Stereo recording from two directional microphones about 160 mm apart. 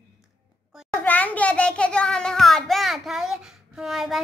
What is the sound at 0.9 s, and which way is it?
A child's voice, 10° left (ahead or behind).